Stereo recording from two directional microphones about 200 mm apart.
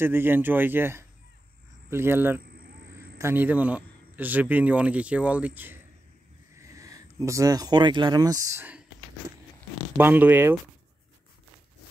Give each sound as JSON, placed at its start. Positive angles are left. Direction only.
{"t": 0.0, "sound": "a man's voice", "side_deg": -10}
{"t": 9.9, "sound": "a man's voice", "side_deg": -10}